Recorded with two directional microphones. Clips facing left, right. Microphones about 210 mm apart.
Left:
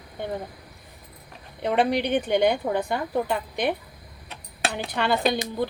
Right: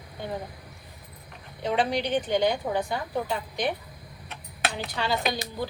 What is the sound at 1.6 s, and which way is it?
Speech, 60° left (ahead or behind).